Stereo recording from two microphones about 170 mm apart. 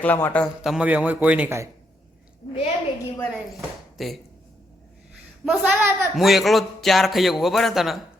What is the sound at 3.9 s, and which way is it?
Speech, centre (ahead or behind).